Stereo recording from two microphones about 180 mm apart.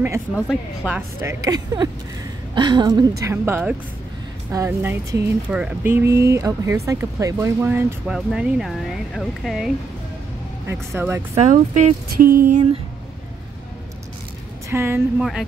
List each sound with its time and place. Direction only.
0.3 s speech: 5° right (ahead or behind)
1.4 s a woman's voice: 20° right (ahead or behind); by 9.7 s centre (ahead or behind)
10.7 s speech: 15° right (ahead or behind)
11.3 s speech: 40° right (ahead or behind)
14.7 s speech: 15° right (ahead or behind)
15.1 s speech: centre (ahead or behind)